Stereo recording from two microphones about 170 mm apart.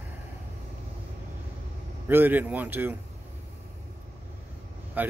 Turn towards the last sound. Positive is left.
turn(degrees=-10)  # may be behind; listen again after turning